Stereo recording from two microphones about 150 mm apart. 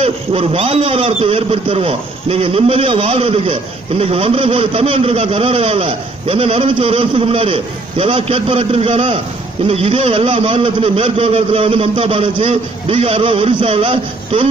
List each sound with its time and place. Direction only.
0.0 s speech: 40° right (ahead or behind)